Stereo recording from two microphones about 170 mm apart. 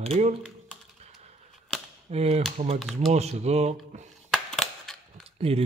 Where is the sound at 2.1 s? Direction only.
40° right (ahead or behind).